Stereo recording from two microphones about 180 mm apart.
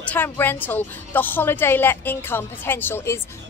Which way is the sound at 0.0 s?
10° left (ahead or behind).